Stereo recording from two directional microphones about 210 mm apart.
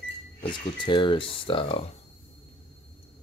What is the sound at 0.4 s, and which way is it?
Speech, 20° left (ahead or behind).